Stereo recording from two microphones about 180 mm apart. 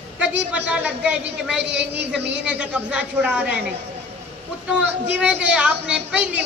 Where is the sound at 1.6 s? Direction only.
70° right (ahead or behind).